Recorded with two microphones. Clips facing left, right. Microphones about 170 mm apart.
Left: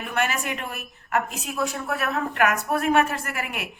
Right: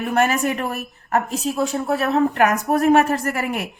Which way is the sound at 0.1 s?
40° right (ahead or behind).